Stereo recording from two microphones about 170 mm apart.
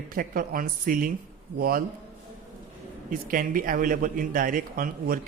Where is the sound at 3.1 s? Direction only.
55° right (ahead or behind).